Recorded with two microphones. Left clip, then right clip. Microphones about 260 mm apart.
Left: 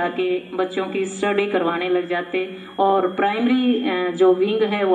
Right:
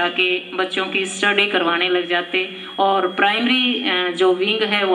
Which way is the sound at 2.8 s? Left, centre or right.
Right.